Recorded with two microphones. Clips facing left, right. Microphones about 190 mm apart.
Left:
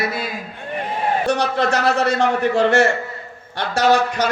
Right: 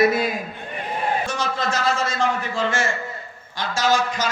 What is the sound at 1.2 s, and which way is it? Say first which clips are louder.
A man's voice: left 6 dB; 65° left (ahead or behind).